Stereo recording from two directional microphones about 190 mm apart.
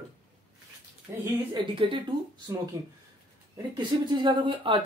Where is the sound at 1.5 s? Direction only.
25° right (ahead or behind).